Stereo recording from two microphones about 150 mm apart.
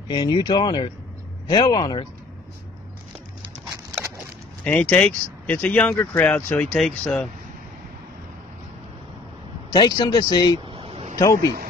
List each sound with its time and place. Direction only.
0.1 s speech: 30° left (ahead or behind)
4.6 s speech: 10° left (ahead or behind)
9.7 s speech: 30° left (ahead or behind)
10.6 s a sound: 40° right (ahead or behind)
11.1 s speech: 20° left (ahead or behind)